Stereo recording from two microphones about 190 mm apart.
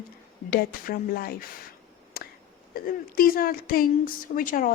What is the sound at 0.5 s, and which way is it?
Speech, 50° left (ahead or behind).